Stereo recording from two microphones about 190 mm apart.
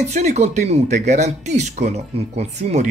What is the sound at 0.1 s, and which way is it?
Speech, 35° right (ahead or behind).